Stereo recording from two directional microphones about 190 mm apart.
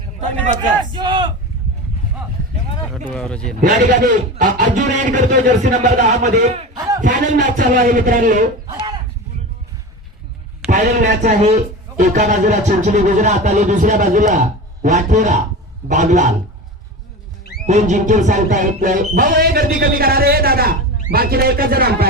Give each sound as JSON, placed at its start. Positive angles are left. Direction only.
{"t": 0.2, "sound": "a man's voice", "side_deg": -40}
{"t": 0.9, "sound": "a sound", "side_deg": -25}
{"t": 3.1, "sound": "speech", "side_deg": 5}
{"t": 3.6, "sound": "music", "side_deg": -40}
{"t": 5.8, "sound": "speech", "side_deg": -40}
{"t": 7.0, "sound": "music", "side_deg": -45}
{"t": 10.7, "sound": "speech", "side_deg": -40}
{"t": 17.7, "sound": "music", "side_deg": -40}